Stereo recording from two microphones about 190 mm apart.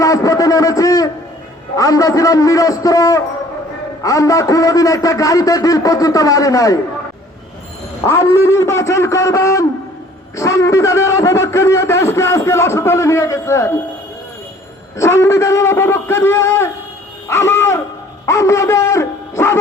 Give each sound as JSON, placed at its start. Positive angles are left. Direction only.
{"t": 0.0, "sound": "a sound", "side_deg": 15}
{"t": 1.7, "sound": "a man's voice", "side_deg": 20}
{"t": 8.0, "sound": "a man's voice", "side_deg": 15}
{"t": 14.9, "sound": "a man's voice", "side_deg": 15}
{"t": 17.2, "sound": "music", "side_deg": 15}
{"t": 18.3, "sound": "a man's voice", "side_deg": 15}